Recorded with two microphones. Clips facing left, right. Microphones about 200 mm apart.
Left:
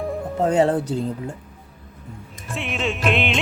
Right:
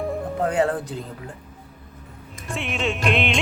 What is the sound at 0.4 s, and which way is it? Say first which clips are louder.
Speech: left 4 dB; 25° left (ahead or behind).